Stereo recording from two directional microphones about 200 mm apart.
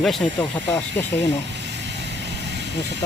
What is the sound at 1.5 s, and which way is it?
Vehicle, 60° right (ahead or behind).